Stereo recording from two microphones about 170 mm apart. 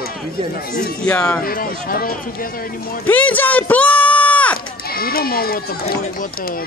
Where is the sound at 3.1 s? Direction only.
10° left (ahead or behind).